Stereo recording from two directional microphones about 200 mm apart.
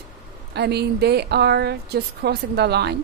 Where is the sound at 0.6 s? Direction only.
55° right (ahead or behind).